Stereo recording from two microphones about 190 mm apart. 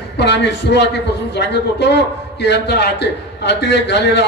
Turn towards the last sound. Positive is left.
turn(degrees=65)  # may be behind; listen again after turning